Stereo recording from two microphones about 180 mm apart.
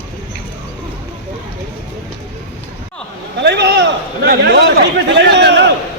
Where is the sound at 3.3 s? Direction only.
70° right (ahead or behind).